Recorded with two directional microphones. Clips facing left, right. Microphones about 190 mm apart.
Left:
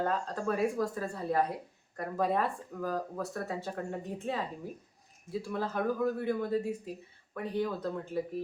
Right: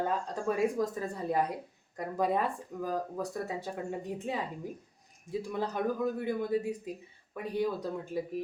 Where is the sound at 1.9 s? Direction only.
15° right (ahead or behind).